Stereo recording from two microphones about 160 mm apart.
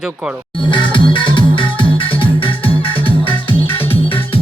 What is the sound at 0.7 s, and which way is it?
Music, 30° left (ahead or behind).